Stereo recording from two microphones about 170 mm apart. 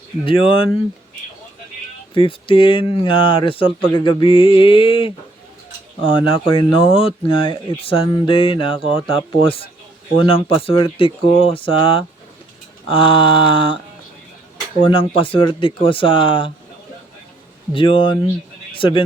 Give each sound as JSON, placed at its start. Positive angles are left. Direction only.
{"t": 0.3, "sound": "speech", "side_deg": 30}
{"t": 2.1, "sound": "speech", "side_deg": 30}
{"t": 14.8, "sound": "speech", "side_deg": 30}
{"t": 17.7, "sound": "a man's voice", "side_deg": 30}